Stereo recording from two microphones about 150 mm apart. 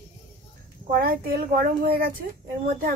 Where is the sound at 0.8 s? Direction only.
85° right.